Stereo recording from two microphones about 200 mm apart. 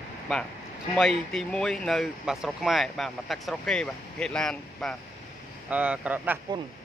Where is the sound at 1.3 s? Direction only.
5° left (ahead or behind).